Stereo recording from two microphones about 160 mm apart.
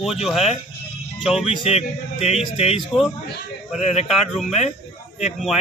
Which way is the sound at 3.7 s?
45° left (ahead or behind).